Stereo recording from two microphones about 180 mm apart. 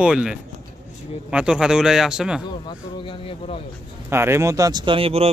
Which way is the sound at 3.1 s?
30° left (ahead or behind).